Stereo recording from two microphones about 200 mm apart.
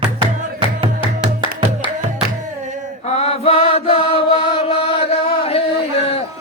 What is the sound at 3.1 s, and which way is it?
Chant, 30° left (ahead or behind).